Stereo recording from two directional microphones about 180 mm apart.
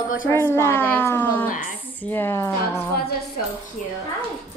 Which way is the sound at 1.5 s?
45° left (ahead or behind).